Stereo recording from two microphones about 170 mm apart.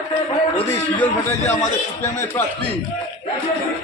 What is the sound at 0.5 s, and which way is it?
Speech, 10° left (ahead or behind).